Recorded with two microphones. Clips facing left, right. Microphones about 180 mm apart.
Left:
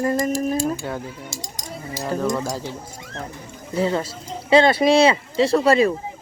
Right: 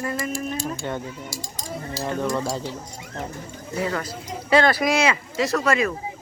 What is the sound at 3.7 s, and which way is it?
Speech, 30° left (ahead or behind).